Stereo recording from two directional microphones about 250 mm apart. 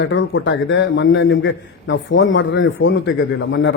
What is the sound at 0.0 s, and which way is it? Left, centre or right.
A man's voice, left.